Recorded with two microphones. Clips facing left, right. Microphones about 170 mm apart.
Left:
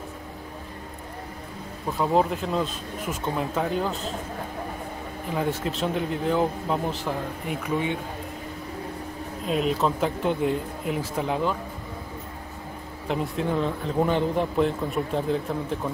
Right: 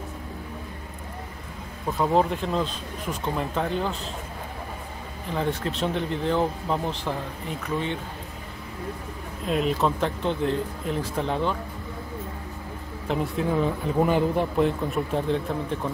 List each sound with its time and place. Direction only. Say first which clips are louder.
1.9 s speech: even; centre (ahead or behind)
5.3 s speech: even; 5° left (ahead or behind)
9.5 s speech: even; centre (ahead or behind)
13.1 s speech: right 1 dB; 5° right (ahead or behind)